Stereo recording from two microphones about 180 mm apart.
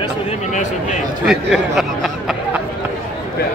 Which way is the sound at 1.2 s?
5° right (ahead or behind).